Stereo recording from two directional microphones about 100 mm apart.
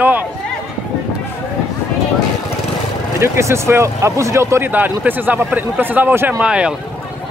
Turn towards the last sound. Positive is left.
turn(degrees=-10)  # may be behind; listen again after turning